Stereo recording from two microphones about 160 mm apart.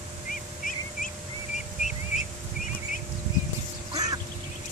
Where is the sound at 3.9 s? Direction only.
25° right (ahead or behind).